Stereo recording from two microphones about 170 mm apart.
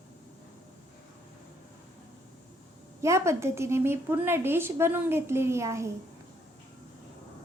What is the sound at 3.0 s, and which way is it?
A woman's voice, 15° right (ahead or behind).